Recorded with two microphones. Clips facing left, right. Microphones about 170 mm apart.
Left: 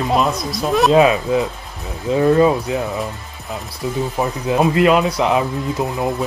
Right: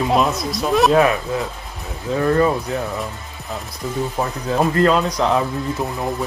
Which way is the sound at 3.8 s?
10° left (ahead or behind).